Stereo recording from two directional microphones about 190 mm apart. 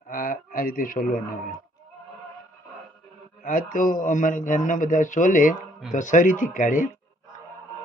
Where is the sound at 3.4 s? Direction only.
45° left (ahead or behind).